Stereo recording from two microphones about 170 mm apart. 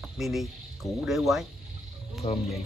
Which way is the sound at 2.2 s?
30° left (ahead or behind).